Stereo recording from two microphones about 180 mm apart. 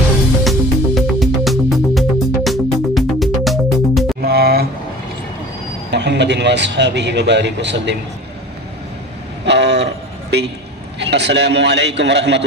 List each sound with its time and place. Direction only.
0.4 s music: centre (ahead or behind)
4.2 s music: 60° right (ahead or behind)
5.9 s a man's voice: 70° right (ahead or behind)
9.5 s vehicle: 70° right (ahead or behind)
10.3 s a man's voice: 70° right (ahead or behind)